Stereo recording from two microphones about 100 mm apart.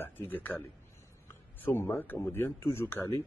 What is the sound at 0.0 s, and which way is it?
A man's voice, 20° left (ahead or behind).